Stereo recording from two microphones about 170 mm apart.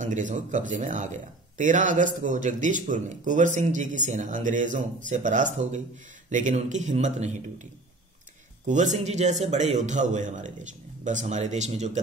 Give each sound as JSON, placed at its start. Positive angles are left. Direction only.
{"t": 0.0, "sound": "speech", "side_deg": -50}
{"t": 8.6, "sound": "speech", "side_deg": -45}